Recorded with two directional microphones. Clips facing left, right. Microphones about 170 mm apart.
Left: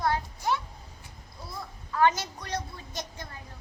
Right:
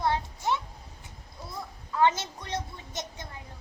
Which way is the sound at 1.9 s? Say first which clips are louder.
Even; 20° right (ahead or behind).